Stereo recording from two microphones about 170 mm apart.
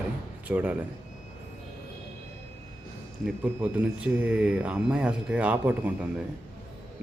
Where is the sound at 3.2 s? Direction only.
5° right (ahead or behind).